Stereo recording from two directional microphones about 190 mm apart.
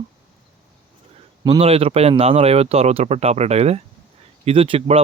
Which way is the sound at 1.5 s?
30° right (ahead or behind).